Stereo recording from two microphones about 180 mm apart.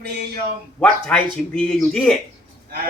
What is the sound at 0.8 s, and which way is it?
A man's voice, 10° left (ahead or behind).